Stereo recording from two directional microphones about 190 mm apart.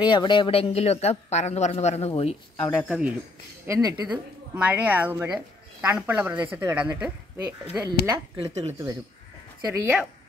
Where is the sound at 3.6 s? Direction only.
20° right (ahead or behind).